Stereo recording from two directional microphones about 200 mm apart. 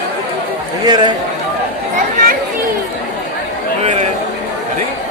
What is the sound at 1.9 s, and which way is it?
Chatter, 45° right (ahead or behind).